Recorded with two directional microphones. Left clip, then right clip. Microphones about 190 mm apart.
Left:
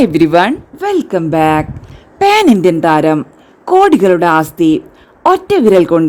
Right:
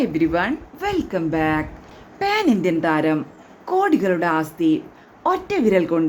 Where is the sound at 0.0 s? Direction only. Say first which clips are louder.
Left 11 dB; 50° left (ahead or behind).